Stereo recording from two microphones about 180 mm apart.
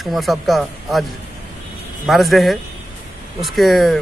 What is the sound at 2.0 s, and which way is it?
A man's voice, centre (ahead or behind).